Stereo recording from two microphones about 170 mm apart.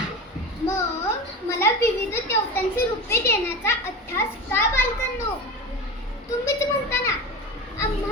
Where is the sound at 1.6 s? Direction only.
15° left (ahead or behind).